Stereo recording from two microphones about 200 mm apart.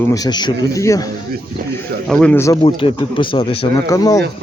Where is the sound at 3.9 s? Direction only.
15° left (ahead or behind).